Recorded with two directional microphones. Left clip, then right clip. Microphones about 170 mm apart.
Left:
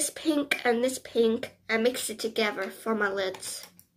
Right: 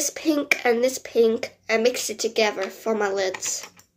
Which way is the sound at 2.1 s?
20° left (ahead or behind).